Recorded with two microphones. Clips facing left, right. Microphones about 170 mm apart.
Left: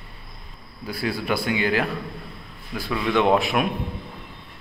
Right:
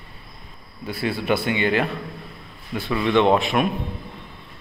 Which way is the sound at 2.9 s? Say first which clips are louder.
Right 2 dB; centre (ahead or behind).